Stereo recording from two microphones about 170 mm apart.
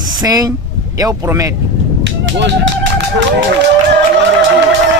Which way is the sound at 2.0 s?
90° right.